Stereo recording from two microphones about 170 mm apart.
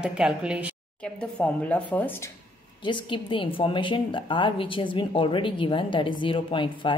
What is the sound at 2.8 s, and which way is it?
A woman's voice, 30° left (ahead or behind).